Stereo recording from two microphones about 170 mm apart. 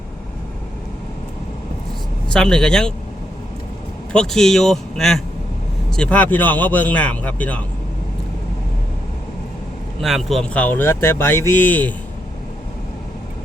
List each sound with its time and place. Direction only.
2.3 s a man's voice: 5° left (ahead or behind)
4.1 s a man's voice: 5° left (ahead or behind)
10.0 s speech: centre (ahead or behind)